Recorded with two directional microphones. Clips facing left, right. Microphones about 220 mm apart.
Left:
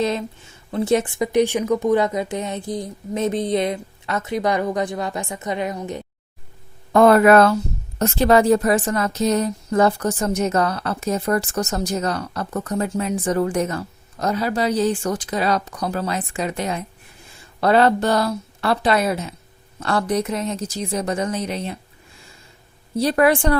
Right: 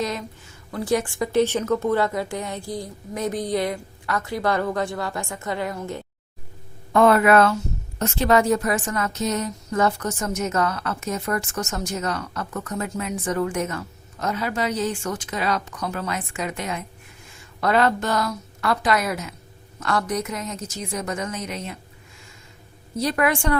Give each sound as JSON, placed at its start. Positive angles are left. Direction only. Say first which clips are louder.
{"t": 0.0, "sound": "a woman's voice", "louder": "left 5 dB", "side_deg": 25}
{"t": 6.9, "sound": "a woman's voice", "louder": "left 4 dB", "side_deg": 40}
{"t": 23.0, "sound": "a woman's voice", "louder": "left 5 dB", "side_deg": 35}